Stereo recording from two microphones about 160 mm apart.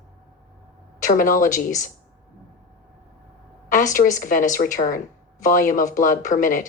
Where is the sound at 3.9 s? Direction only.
55° left (ahead or behind).